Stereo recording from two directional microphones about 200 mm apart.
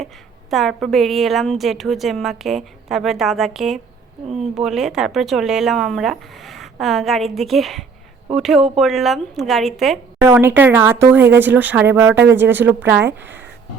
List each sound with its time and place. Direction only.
0.5 s a woman's voice: centre (ahead or behind)
4.3 s speech: 35° right (ahead or behind)
4.6 s a woman's voice: centre (ahead or behind)
10.2 s speech: 10° right (ahead or behind)
13.1 s speech: 60° right (ahead or behind)